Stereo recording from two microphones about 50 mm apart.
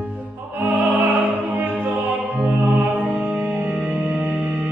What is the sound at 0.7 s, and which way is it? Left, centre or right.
Music, right.